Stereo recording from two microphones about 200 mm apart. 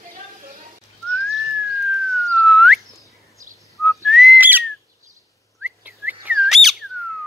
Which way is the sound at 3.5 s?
15° right (ahead or behind).